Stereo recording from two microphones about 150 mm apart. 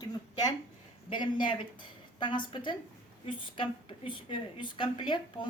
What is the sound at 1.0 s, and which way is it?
A woman's voice, 35° left (ahead or behind).